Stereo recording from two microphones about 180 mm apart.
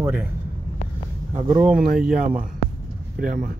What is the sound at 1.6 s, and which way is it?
Speech, 5° right (ahead or behind).